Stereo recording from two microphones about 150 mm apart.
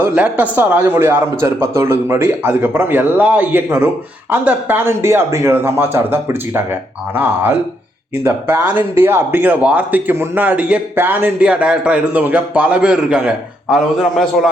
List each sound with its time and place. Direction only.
0.0 s speech: 10° right (ahead or behind)
8.2 s speech: 15° right (ahead or behind)